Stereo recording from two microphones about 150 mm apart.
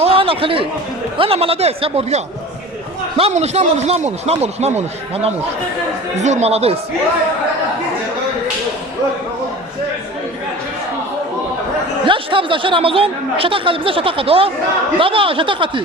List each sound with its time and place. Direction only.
0.0 s a sound: 40° right (ahead or behind)
1.2 s speech: 40° right (ahead or behind)
12.0 s speech: 35° right (ahead or behind)